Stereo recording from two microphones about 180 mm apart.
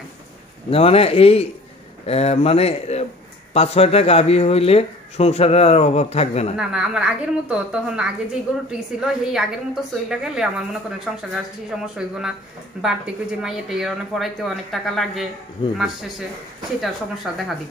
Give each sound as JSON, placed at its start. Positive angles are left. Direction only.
{"t": 0.7, "sound": "speech", "side_deg": 30}
{"t": 6.5, "sound": "a woman's voice", "side_deg": -5}
{"t": 15.6, "sound": "speech", "side_deg": 25}